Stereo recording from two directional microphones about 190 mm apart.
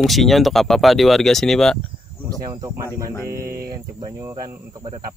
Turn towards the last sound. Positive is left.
turn(degrees=-20)  # may be behind; listen again after turning